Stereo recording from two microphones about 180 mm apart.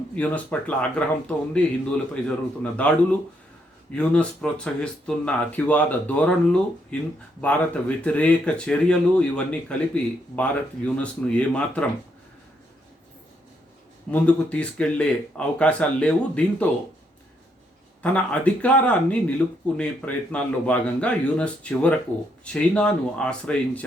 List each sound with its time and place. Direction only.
0.2 s speech: 5° left (ahead or behind)
14.1 s speech: 5° left (ahead or behind)
18.0 s speech: 5° left (ahead or behind)